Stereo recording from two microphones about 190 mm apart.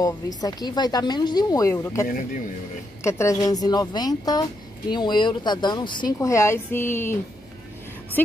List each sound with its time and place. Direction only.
0.4 s speech: 20° left (ahead or behind)